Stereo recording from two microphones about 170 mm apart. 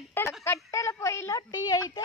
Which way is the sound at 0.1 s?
15° left (ahead or behind).